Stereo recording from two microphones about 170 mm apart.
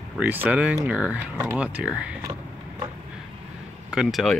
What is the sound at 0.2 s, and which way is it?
Speech, 10° right (ahead or behind).